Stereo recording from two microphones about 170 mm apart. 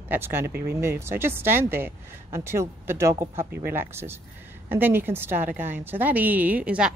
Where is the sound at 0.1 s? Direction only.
15° right (ahead or behind).